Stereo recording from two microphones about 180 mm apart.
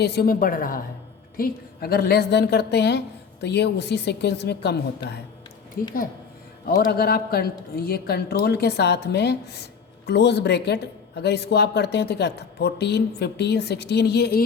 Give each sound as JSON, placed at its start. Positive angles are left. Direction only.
{"t": 0.0, "sound": "a woman's voice", "side_deg": 65}
{"t": 5.8, "sound": "a woman's voice", "side_deg": 50}